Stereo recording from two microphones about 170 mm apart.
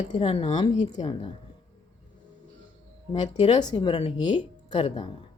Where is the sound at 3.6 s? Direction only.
25° left (ahead or behind).